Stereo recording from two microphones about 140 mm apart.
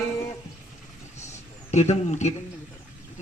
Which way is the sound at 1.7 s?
50° left (ahead or behind).